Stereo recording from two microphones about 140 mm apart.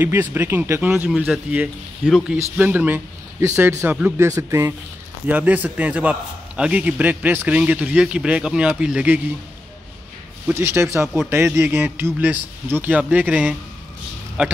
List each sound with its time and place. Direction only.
0.0 s a man's voice: 15° right (ahead or behind)
10.5 s a man's voice: 20° right (ahead or behind)